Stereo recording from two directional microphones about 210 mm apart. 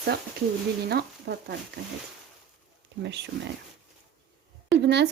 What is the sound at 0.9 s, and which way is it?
Speech, 50° right (ahead or behind).